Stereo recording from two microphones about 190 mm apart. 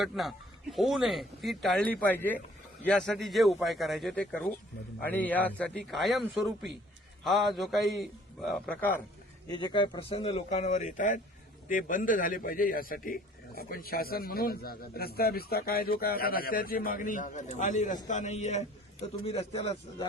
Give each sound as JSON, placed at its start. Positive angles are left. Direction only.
{"t": 0.0, "sound": "speech", "side_deg": 0}
{"t": 9.5, "sound": "a man's voice", "side_deg": 20}